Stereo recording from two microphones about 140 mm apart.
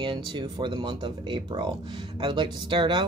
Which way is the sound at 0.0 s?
35° right (ahead or behind).